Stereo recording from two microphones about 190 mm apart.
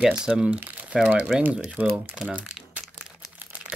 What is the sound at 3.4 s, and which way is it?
Crumpling, 10° right (ahead or behind).